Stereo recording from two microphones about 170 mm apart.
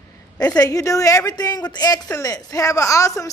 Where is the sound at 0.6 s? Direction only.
20° left (ahead or behind).